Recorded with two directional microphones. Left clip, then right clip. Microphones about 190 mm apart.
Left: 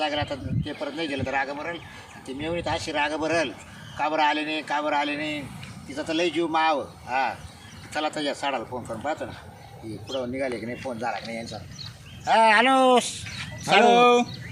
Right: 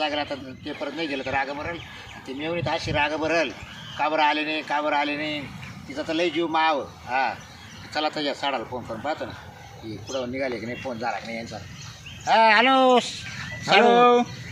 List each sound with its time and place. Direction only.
0.0 s speech: 5° left (ahead or behind)
13.9 s speech: 25° left (ahead or behind)